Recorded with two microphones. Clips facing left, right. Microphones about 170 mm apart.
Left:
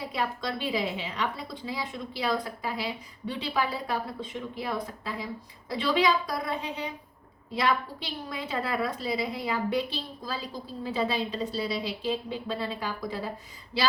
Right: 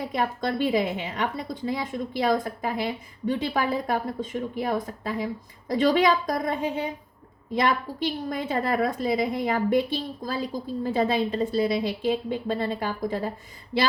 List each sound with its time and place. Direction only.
0.0 s a woman's voice: 50° right (ahead or behind)